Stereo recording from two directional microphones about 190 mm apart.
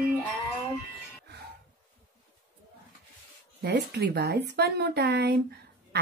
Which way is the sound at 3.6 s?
60° right (ahead or behind).